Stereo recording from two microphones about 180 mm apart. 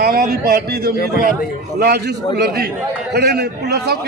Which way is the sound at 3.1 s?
65° right (ahead or behind).